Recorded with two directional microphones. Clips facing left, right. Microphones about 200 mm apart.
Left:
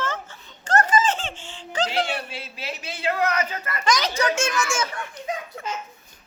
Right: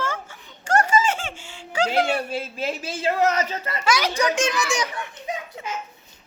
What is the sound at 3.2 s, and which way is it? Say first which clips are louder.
Speech: right 4 dB; 30° right (ahead or behind).